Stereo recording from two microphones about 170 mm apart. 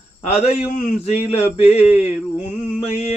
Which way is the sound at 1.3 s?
35° left (ahead or behind).